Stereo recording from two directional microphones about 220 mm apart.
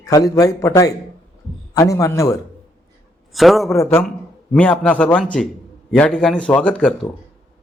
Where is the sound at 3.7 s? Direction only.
10° left (ahead or behind).